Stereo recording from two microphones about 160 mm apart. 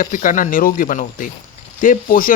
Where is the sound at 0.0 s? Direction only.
55° left (ahead or behind).